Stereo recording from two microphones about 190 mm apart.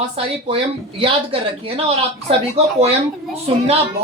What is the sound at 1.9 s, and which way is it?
Speech, 30° right (ahead or behind).